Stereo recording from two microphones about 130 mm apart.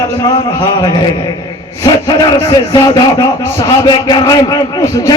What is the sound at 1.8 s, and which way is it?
A man's voice, 30° left (ahead or behind).